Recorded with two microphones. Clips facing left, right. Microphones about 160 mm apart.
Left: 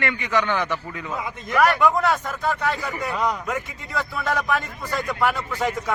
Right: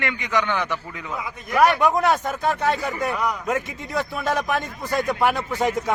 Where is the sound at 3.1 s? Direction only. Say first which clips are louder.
Left 1 dB; 20° left (ahead or behind).